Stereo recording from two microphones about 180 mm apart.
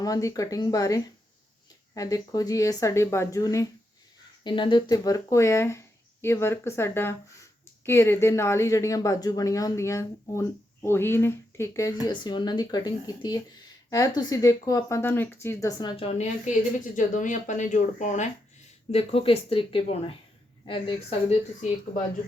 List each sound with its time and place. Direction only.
0.0 s speech: 20° left (ahead or behind)